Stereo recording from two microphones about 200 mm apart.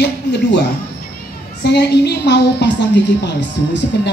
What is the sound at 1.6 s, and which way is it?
Speech, 60° left (ahead or behind).